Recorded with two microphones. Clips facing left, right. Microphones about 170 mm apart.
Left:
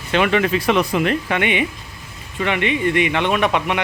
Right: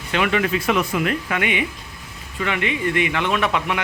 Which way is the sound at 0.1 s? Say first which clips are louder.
Left 3 dB; 30° left (ahead or behind).